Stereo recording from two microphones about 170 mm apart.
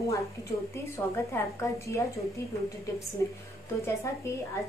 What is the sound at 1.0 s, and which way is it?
A woman's voice, 15° left (ahead or behind).